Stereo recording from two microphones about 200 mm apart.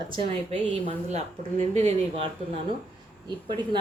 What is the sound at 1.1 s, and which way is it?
Speech, 35° right (ahead or behind).